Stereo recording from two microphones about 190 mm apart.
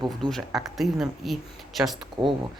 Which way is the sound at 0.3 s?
Centre (ahead or behind).